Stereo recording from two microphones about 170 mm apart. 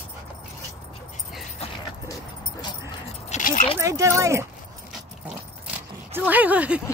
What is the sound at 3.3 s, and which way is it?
Dog, 45° left (ahead or behind).